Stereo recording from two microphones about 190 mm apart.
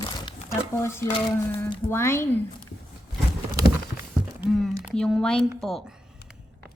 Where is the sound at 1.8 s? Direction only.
15° left (ahead or behind).